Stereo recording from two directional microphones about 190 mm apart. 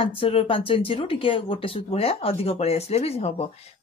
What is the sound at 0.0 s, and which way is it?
Speech, 30° left (ahead or behind).